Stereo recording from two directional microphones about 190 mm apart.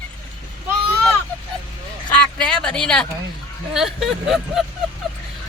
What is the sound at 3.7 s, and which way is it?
Vehicle, centre (ahead or behind).